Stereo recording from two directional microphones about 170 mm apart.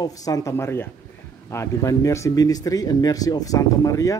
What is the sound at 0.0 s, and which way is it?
Speech, 20° left (ahead or behind).